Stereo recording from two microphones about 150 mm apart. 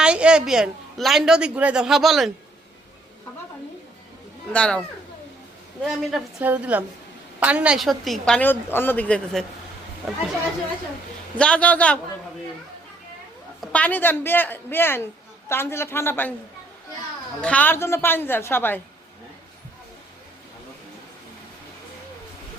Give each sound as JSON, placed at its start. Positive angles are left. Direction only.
{"t": 0.0, "sound": "a woman's voice", "side_deg": -5}
{"t": 4.5, "sound": "speech", "side_deg": 5}
{"t": 5.8, "sound": "a woman's voice", "side_deg": 0}
{"t": 6.4, "sound": "a woman's voice", "side_deg": -10}
{"t": 11.3, "sound": "speech", "side_deg": 5}
{"t": 13.6, "sound": "speech", "side_deg": 10}
{"t": 17.4, "sound": "speech", "side_deg": 10}